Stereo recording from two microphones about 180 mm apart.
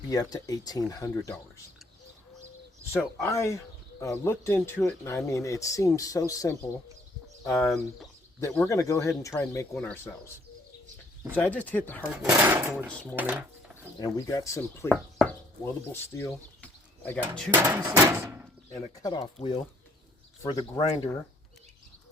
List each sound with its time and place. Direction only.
0.1 s speech: 20° left (ahead or behind)
3.2 s speech: 15° left (ahead or behind)
12.3 s a sound: 10° right (ahead or behind)
12.9 s speech: 5° left (ahead or behind)
13.1 s a sound: 10° right (ahead or behind)
14.0 s speech: 20° left (ahead or behind)
17.6 s a sound: 15° right (ahead or behind)
18.7 s speech: 20° left (ahead or behind)
19.2 s speech: 35° left (ahead or behind)